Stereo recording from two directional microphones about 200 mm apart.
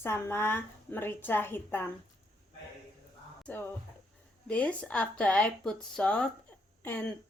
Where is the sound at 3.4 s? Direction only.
10° left (ahead or behind).